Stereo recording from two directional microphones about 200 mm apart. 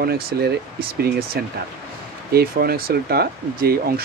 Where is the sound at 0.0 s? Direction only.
50° right (ahead or behind).